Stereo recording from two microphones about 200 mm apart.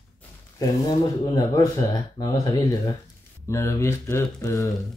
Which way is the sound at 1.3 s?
20° left (ahead or behind).